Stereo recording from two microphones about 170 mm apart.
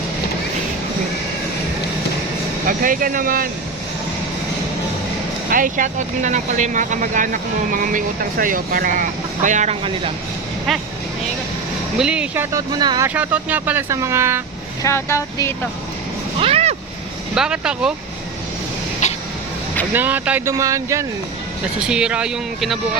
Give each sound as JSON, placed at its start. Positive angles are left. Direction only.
{"t": 2.6, "sound": "speech", "side_deg": -55}
{"t": 5.5, "sound": "speech", "side_deg": -50}
{"t": 10.7, "sound": "speech", "side_deg": 0}
{"t": 11.9, "sound": "speech", "side_deg": -5}
{"t": 13.1, "sound": "speech", "side_deg": -10}
{"t": 14.8, "sound": "speech", "side_deg": 15}
{"t": 16.4, "sound": "vehicle", "side_deg": -35}
{"t": 17.3, "sound": "speech", "side_deg": -5}
{"t": 19.0, "sound": "a sound", "side_deg": 45}
{"t": 19.9, "sound": "speech", "side_deg": -10}
{"t": 21.8, "sound": "speech", "side_deg": -5}